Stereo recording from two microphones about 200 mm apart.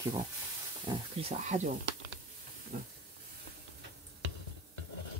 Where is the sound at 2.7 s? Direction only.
45° right (ahead or behind).